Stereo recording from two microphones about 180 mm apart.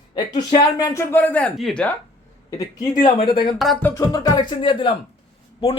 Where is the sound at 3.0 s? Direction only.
30° left (ahead or behind).